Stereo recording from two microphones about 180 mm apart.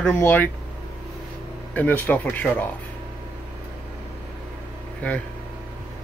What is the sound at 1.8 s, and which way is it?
Speech, 10° left (ahead or behind).